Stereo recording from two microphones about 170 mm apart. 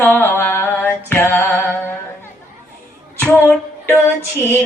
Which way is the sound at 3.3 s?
10° left (ahead or behind).